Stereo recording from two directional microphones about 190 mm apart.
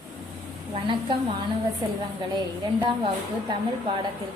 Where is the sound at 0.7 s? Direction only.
25° right (ahead or behind).